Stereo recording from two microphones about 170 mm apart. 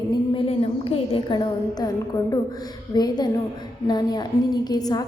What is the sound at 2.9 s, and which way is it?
A woman's voice, 25° left (ahead or behind).